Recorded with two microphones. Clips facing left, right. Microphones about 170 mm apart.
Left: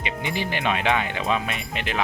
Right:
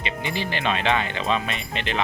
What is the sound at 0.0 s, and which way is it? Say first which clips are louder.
Speech: even; 15° left (ahead or behind).